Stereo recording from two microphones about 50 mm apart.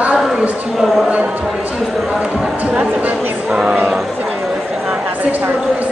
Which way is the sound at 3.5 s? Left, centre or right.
Centre.